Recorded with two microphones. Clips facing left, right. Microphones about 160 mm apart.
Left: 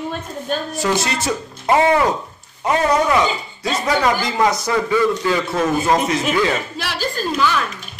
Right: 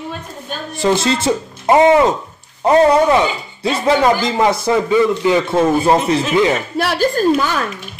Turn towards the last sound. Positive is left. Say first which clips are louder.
# right 5 dB
turn(degrees=-45)  # may be behind; listen again after turning